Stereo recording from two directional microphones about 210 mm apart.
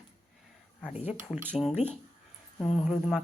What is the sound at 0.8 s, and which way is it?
Speech, 5° right (ahead or behind).